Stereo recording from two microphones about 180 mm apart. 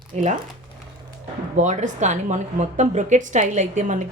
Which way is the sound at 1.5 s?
40° right (ahead or behind).